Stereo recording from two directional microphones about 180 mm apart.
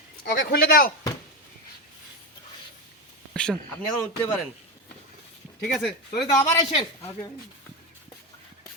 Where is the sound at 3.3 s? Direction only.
5° left (ahead or behind).